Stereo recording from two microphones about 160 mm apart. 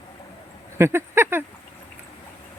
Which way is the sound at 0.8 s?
15° right (ahead or behind).